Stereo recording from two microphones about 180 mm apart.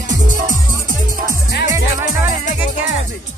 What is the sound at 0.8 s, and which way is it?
Music, 50° right (ahead or behind).